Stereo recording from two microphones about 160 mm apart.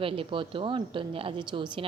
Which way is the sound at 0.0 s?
35° right (ahead or behind).